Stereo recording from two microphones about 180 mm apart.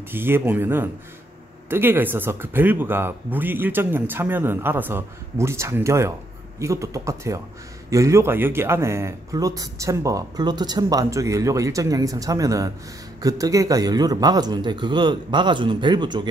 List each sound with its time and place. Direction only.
0.1 s speech: 10° right (ahead or behind)